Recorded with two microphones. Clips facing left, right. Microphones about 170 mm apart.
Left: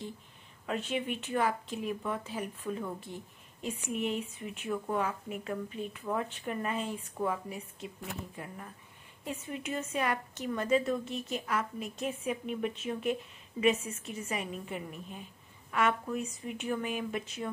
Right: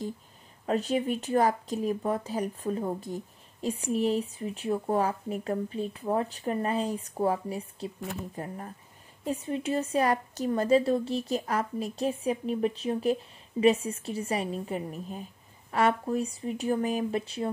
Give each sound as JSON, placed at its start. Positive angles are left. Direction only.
{"t": 0.7, "sound": "a woman's voice", "side_deg": -40}